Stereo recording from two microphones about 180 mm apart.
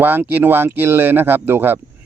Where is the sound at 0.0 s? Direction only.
10° right (ahead or behind).